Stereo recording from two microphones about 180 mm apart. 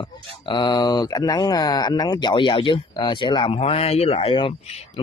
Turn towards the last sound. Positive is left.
turn(degrees=35)  # may be behind; listen again after turning